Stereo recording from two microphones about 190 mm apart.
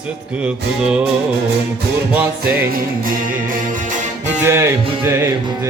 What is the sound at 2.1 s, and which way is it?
Music, 10° right (ahead or behind).